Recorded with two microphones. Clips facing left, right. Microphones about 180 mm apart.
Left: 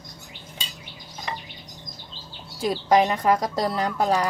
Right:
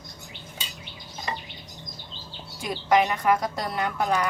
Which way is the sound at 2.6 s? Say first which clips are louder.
Left 3 dB; 35° left (ahead or behind).